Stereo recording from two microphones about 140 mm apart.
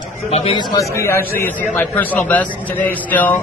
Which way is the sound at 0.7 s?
20° left (ahead or behind).